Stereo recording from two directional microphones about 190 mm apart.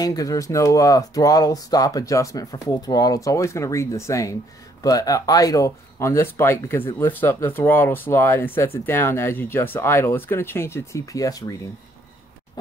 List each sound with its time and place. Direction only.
0.0 s speech: 20° left (ahead or behind)